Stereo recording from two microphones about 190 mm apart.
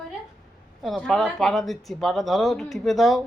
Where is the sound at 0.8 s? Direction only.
Centre (ahead or behind).